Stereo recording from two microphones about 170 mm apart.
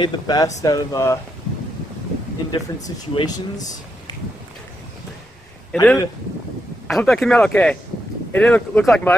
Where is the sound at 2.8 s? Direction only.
20° left (ahead or behind).